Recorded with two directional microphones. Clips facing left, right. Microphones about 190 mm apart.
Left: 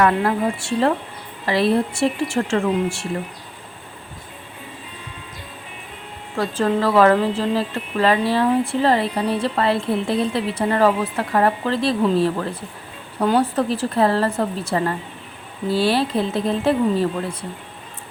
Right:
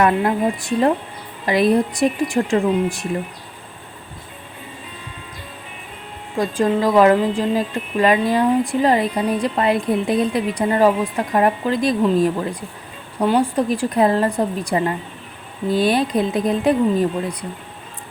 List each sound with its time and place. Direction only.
0.0 s speech: 20° right (ahead or behind)
6.3 s speech: 15° right (ahead or behind)